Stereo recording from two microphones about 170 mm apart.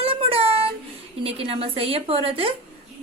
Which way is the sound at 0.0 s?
35° right (ahead or behind).